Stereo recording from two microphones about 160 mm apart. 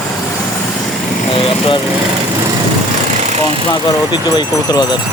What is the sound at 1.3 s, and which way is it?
Vehicle, 35° left (ahead or behind).